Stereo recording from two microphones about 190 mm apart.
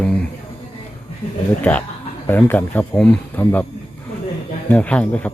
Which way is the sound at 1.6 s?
5° left (ahead or behind).